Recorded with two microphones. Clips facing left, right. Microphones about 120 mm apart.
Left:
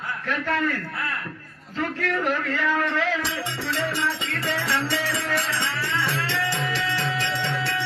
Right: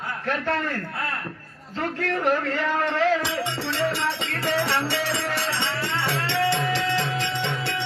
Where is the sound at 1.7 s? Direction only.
35° right (ahead or behind).